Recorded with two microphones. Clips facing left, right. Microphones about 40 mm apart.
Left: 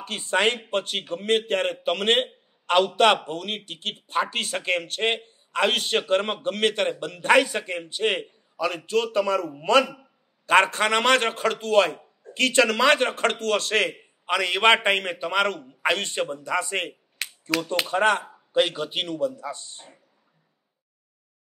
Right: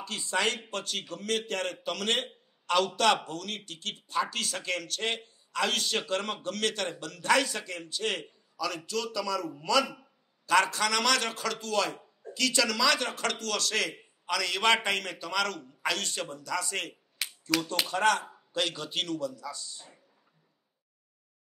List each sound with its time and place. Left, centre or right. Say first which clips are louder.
0.0 s a man's voice: left 6 dB; left
17.2 s a sound: left 3 dB; centre
17.8 s a man's voice: left 5 dB; left